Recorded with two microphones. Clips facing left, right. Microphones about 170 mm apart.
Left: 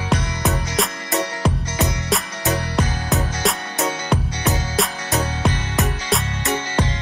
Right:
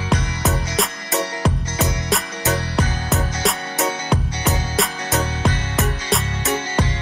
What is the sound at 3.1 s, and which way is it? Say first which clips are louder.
Music: even; centre (ahead or behind).